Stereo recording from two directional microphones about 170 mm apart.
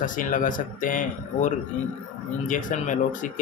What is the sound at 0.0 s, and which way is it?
Speech, 50° left (ahead or behind).